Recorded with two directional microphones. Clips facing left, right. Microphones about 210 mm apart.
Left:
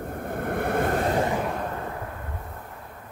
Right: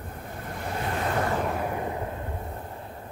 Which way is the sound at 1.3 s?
Centre (ahead or behind).